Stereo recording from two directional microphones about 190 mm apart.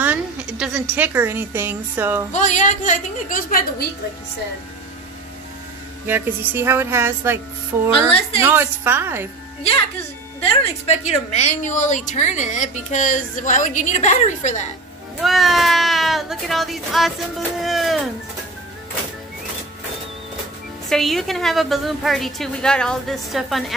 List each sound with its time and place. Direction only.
0.0 s a woman's voice: 10° right (ahead or behind)
2.3 s a woman's voice: 40° left (ahead or behind)
6.0 s a woman's voice: 10° right (ahead or behind)
10.4 s a woman's voice: 30° left (ahead or behind)
15.2 s speech: centre (ahead or behind)
20.9 s speech: centre (ahead or behind)